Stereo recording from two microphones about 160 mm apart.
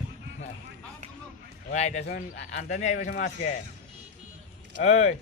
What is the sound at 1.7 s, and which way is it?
Speech, 45° left (ahead or behind).